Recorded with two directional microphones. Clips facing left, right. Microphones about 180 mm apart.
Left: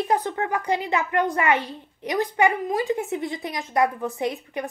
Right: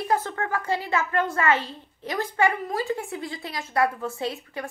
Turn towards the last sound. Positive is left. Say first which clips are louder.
# left 3 dB
turn(degrees=20)  # may be behind; listen again after turning